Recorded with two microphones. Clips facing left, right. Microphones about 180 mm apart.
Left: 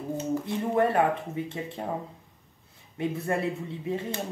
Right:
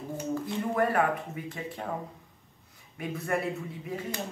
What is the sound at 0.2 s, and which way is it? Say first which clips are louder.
Speech: left 1 dB; 25° left (ahead or behind).